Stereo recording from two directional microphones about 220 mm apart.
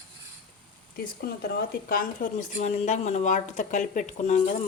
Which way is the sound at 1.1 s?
45° left (ahead or behind).